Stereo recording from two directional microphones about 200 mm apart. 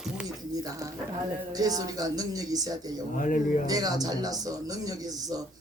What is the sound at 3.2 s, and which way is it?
Speech, 40° left (ahead or behind).